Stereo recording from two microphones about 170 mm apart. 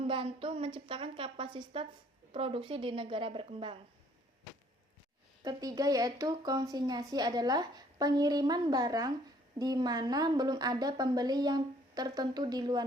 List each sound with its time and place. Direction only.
0.0 s a woman's voice: 30° right (ahead or behind)
5.4 s speech: 20° right (ahead or behind)